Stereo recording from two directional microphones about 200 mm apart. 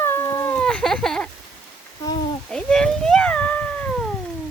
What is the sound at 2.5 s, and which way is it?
Cat, 5° left (ahead or behind).